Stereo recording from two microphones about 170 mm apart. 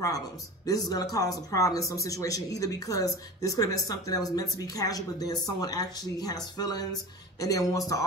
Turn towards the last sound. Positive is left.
turn(degrees=20)  # may be behind; listen again after turning